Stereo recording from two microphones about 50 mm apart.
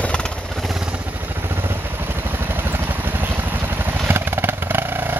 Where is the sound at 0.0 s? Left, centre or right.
Centre.